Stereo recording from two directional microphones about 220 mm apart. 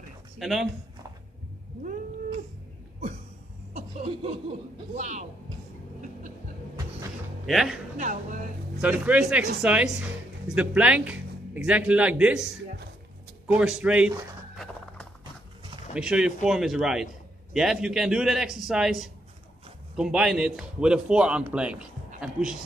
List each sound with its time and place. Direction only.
0.4 s speech: centre (ahead or behind)
3.7 s chuckle: 30° right (ahead or behind)
4.9 s speech: 30° right (ahead or behind)
7.4 s a man's voice: centre (ahead or behind)
8.8 s a man's voice: 5° right (ahead or behind)
13.6 s speech: 5° right (ahead or behind)
15.9 s a man's voice: 5° right (ahead or behind)